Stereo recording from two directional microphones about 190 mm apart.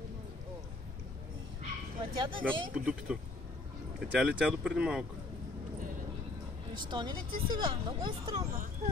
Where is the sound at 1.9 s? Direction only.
25° right (ahead or behind).